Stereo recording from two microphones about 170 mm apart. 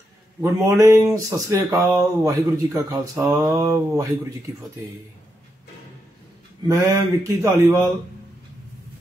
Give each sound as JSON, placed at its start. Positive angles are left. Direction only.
{"t": 0.4, "sound": "speech", "side_deg": -20}
{"t": 6.7, "sound": "speech", "side_deg": -20}